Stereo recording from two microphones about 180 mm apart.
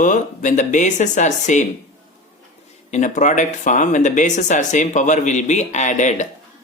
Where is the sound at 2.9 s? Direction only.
40° left (ahead or behind).